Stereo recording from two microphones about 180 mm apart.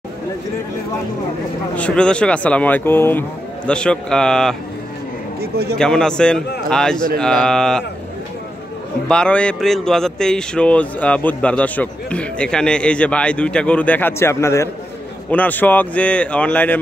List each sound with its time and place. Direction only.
1.8 s speech: 5° left (ahead or behind)
5.4 s a man's voice: 60° right (ahead or behind)
5.8 s speech: 5° left (ahead or behind)
9.1 s speech: 5° left (ahead or behind)